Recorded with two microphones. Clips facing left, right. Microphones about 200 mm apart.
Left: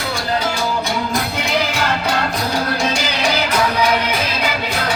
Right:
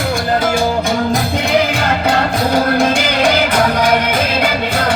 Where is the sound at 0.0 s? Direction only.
50° right (ahead or behind).